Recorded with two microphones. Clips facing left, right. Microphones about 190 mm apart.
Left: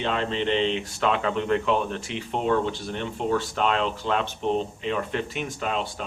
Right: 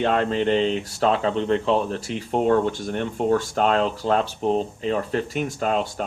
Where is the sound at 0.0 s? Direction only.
50° right (ahead or behind).